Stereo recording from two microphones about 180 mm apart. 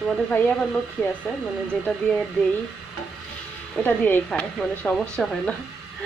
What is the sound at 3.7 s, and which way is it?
Speech, 10° left (ahead or behind).